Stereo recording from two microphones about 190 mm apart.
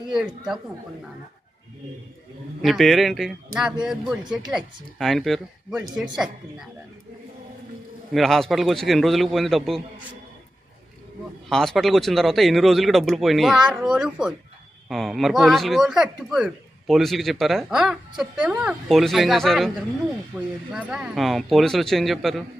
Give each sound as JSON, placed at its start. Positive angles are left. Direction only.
{"t": 0.1, "sound": "speech", "side_deg": -5}
{"t": 2.6, "sound": "speech", "side_deg": 0}
{"t": 8.1, "sound": "speech", "side_deg": 0}
{"t": 11.4, "sound": "speech", "side_deg": 0}